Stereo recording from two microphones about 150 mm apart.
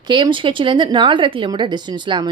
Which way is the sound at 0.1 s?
35° right (ahead or behind).